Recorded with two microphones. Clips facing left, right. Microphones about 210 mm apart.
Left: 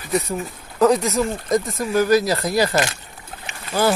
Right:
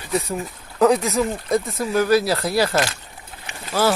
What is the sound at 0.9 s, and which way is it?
Speech, 10° right (ahead or behind).